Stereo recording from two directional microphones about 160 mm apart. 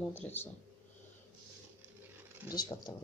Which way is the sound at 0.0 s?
10° left (ahead or behind).